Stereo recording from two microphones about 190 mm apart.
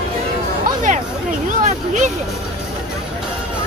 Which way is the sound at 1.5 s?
40° right (ahead or behind).